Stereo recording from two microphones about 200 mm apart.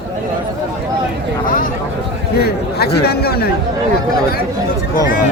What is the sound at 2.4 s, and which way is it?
Speech, 50° left (ahead or behind).